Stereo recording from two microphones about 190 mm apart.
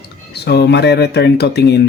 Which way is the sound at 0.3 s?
60° left (ahead or behind).